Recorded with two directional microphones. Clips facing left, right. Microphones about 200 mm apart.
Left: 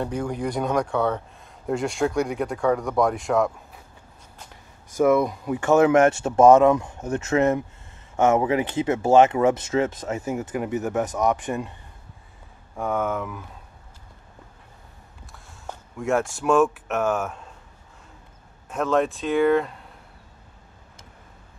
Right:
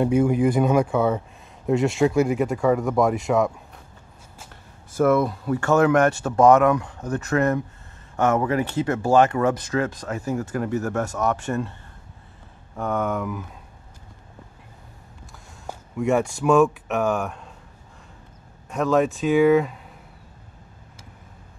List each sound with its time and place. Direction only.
0.0 s speech: 5° right (ahead or behind)
4.5 s speech: 10° left (ahead or behind)
12.7 s speech: 5° left (ahead or behind)
15.6 s speech: 5° right (ahead or behind)
18.7 s speech: centre (ahead or behind)